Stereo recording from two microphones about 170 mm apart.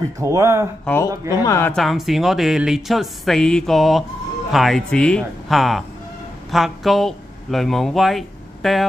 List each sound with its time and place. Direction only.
0.2 s speech: 15° right (ahead or behind)
0.9 s speech: 5° left (ahead or behind)
1.3 s speech: 20° left (ahead or behind)
1.7 s speech: centre (ahead or behind)